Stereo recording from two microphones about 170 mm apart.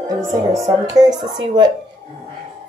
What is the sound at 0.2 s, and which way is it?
Speech, 20° right (ahead or behind).